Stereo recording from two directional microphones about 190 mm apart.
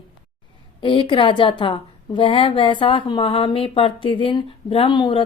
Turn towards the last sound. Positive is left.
turn(degrees=25)  # may be behind; listen again after turning